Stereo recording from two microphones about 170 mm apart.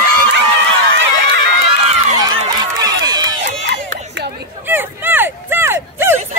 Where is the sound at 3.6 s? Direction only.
90° right.